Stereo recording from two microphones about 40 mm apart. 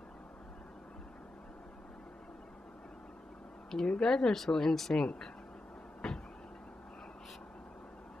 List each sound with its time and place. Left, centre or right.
3.7 s a woman's voice: centre
6.0 s vehicle: centre